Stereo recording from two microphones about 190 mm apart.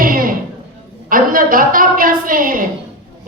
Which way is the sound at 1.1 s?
45° right (ahead or behind).